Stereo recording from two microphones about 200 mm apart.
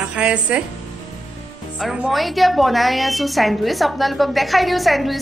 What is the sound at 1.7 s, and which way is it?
A woman's voice, centre (ahead or behind).